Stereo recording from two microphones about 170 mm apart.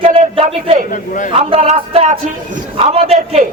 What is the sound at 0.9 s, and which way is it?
Speech, 50° left (ahead or behind).